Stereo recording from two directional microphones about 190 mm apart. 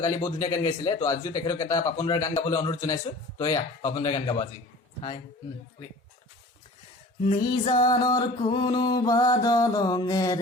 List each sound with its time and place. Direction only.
0.0 s speech: 20° left (ahead or behind)
7.5 s speech: 25° left (ahead or behind)